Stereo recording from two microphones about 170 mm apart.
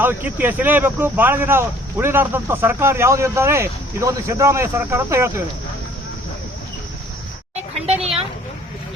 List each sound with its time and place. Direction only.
0.0 s speech: 10° right (ahead or behind)
7.9 s speech: 35° right (ahead or behind)